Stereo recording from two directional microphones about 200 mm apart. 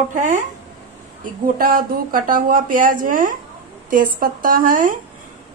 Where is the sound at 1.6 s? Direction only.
45° right (ahead or behind).